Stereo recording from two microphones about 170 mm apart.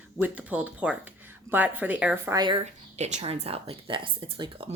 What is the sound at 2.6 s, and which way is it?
A woman's voice, 45° right (ahead or behind).